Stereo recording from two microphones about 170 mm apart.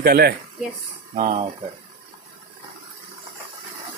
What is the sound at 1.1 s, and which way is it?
Speech, 45° right (ahead or behind).